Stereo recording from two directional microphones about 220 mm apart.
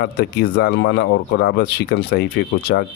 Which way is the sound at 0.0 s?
50° left (ahead or behind).